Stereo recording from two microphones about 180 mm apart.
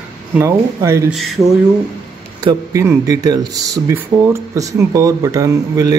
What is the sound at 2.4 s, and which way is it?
Speech, 15° right (ahead or behind).